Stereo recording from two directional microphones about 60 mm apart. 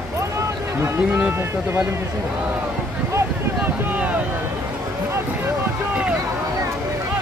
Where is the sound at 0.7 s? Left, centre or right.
Right.